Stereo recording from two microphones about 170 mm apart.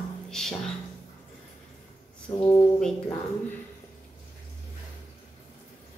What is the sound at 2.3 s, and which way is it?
Speech, 25° left (ahead or behind).